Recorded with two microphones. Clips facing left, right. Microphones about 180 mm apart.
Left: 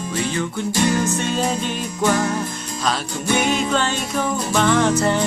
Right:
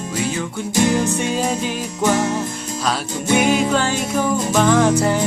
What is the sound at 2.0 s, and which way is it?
Music, 20° right (ahead or behind).